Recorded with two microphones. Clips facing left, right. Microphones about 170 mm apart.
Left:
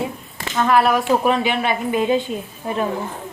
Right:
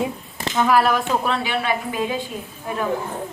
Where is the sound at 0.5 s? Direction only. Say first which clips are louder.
Left 1 dB; 5° right (ahead or behind).